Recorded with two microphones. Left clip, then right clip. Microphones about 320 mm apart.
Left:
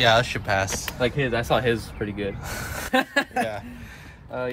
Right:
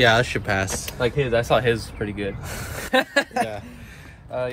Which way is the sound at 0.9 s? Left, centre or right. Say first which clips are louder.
Right 3 dB; centre.